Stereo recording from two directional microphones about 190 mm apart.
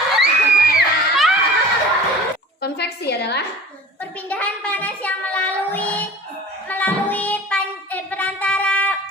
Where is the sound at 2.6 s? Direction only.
60° left (ahead or behind).